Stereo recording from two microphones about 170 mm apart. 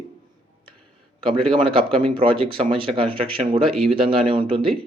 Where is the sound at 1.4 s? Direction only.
30° right (ahead or behind).